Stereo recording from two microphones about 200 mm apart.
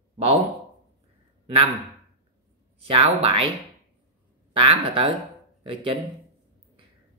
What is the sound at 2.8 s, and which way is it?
Speech, 30° right (ahead or behind).